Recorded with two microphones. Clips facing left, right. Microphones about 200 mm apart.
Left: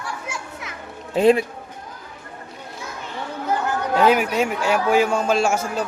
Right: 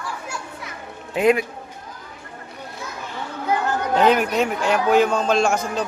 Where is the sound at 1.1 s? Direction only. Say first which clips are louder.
Left 2 dB; 30° left (ahead or behind).